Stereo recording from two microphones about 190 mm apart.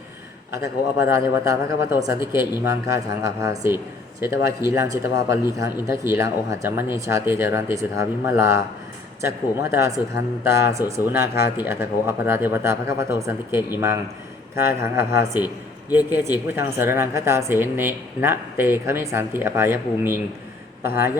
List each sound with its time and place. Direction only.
1.0 s speech: 15° right (ahead or behind)